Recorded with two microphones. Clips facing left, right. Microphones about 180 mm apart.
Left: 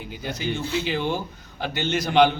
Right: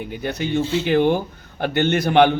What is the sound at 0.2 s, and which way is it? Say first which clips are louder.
A man's voice: right 6 dB; 60° right (ahead or behind).